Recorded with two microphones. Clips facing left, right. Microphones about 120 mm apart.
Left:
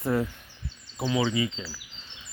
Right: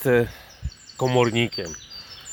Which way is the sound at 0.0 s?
90° right.